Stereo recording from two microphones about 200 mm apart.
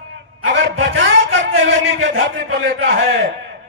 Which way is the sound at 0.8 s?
60° right (ahead or behind).